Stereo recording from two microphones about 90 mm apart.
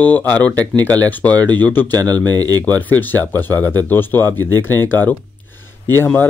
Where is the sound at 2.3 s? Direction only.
45° right (ahead or behind).